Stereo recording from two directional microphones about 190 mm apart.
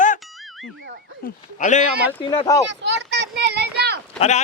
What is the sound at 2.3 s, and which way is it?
Speech, 20° left (ahead or behind).